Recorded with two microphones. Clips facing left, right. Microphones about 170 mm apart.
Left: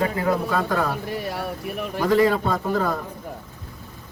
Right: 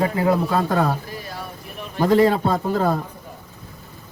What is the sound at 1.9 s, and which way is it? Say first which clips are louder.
A man's voice: right 3 dB; 30° right (ahead or behind).